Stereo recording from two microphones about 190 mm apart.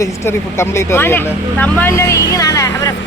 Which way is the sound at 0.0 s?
15° left (ahead or behind).